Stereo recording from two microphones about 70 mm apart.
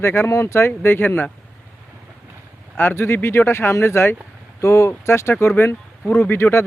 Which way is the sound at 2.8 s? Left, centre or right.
Left.